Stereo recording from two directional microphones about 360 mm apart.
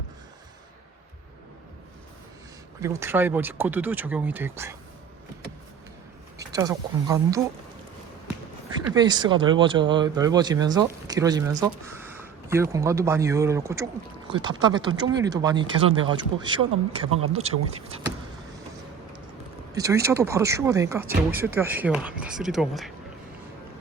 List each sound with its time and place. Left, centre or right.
2.8 s speech: centre
6.4 s speech: centre
9.0 s speech: centre
19.7 s speech: centre